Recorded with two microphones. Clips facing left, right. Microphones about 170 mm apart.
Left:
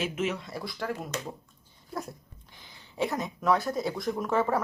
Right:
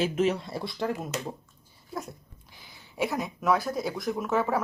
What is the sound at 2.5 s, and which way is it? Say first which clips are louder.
Speech: even; 10° right (ahead or behind).